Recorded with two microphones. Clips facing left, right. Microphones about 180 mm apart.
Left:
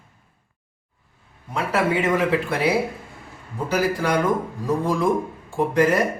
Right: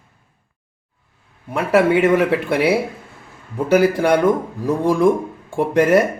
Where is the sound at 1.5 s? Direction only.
65° right (ahead or behind).